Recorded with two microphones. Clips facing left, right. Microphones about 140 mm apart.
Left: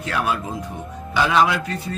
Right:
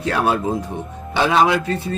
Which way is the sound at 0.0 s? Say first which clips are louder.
Right 5 dB; 35° right (ahead or behind).